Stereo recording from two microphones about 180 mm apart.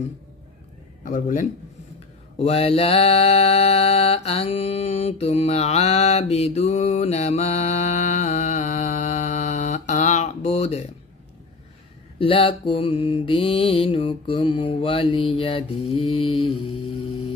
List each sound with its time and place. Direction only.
1.0 s speech: 45° left (ahead or behind)
2.3 s mantra: 35° left (ahead or behind)
12.2 s mantra: 30° left (ahead or behind)